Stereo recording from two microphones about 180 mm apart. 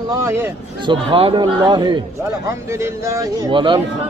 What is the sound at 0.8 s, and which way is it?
Speech, 30° right (ahead or behind).